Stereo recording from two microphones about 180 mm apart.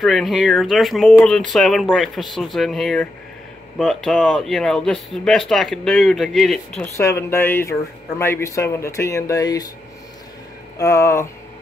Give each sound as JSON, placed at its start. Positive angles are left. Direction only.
{"t": 0.0, "sound": "speech", "side_deg": 0}
{"t": 7.0, "sound": "speech", "side_deg": 15}
{"t": 10.8, "sound": "speech", "side_deg": 15}